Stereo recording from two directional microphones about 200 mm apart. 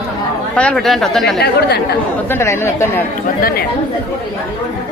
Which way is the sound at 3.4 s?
45° left (ahead or behind).